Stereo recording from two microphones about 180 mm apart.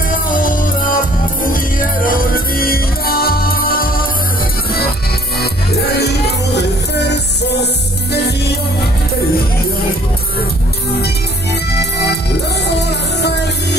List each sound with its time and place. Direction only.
0.1 s music: 50° left (ahead or behind)
5.9 s music: 65° left (ahead or behind)
12.6 s music: 70° left (ahead or behind)